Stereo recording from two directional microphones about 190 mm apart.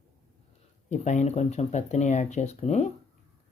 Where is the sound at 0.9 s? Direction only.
40° left (ahead or behind).